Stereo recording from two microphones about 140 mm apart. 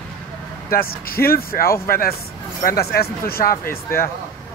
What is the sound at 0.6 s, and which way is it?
Speech, 90° left.